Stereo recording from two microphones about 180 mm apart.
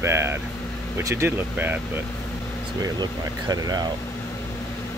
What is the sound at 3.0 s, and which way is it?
Speech, 25° right (ahead or behind).